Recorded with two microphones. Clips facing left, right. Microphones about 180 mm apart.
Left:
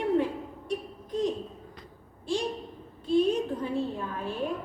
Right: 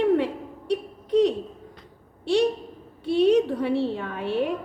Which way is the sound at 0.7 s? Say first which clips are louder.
Right 10 dB; 80° right.